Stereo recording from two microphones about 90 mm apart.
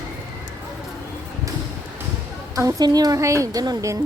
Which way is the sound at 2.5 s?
40° right (ahead or behind).